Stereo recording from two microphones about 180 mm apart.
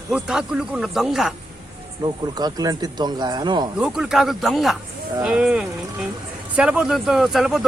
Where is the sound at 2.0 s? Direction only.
20° right (ahead or behind).